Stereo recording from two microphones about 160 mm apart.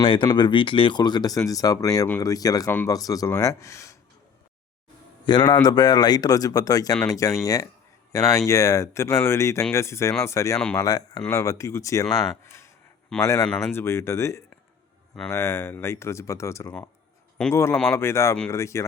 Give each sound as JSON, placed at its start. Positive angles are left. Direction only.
{"t": 0.0, "sound": "speech", "side_deg": 35}
{"t": 2.6, "sound": "speech", "side_deg": 10}
{"t": 2.9, "sound": "speech", "side_deg": 20}
{"t": 5.2, "sound": "a man's voice", "side_deg": 25}
{"t": 12.0, "sound": "speech", "side_deg": 0}
{"t": 13.2, "sound": "speech", "side_deg": 20}